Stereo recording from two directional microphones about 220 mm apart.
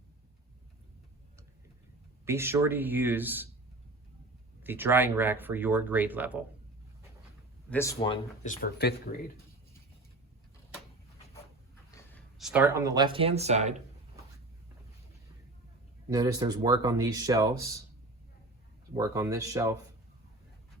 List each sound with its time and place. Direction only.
2.2 s speech: 10° right (ahead or behind)
4.6 s speech: 10° right (ahead or behind)
7.7 s speech: 10° left (ahead or behind)
7.9 s speech: 25° left (ahead or behind)
8.4 s speech: 45° left (ahead or behind)
11.9 s a sound: 15° left (ahead or behind)
12.4 s speech: 5° right (ahead or behind); by 13.7 s 30° right (ahead or behind)
16.0 s speech: 15° right (ahead or behind)
18.9 s speech: 15° right (ahead or behind)